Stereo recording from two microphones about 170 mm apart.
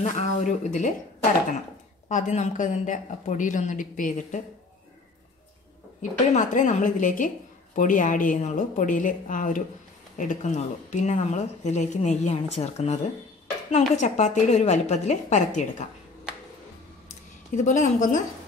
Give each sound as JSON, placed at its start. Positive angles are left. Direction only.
{"t": 0.0, "sound": "speech", "side_deg": 45}
{"t": 2.0, "sound": "speech", "side_deg": 45}
{"t": 6.3, "sound": "speech", "side_deg": 45}
{"t": 17.6, "sound": "speech", "side_deg": 45}